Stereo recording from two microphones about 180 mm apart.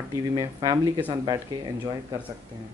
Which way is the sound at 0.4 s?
20° right (ahead or behind).